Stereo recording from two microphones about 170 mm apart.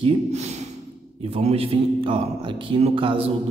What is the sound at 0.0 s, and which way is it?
Speech, 40° right (ahead or behind).